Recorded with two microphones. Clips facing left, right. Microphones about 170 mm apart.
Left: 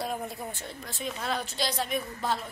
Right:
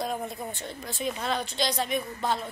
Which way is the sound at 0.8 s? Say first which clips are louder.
Right 3 dB; centre (ahead or behind).